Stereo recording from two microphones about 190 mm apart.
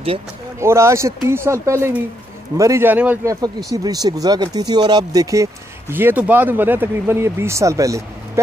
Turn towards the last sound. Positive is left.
turn(degrees=-15)  # may be behind; listen again after turning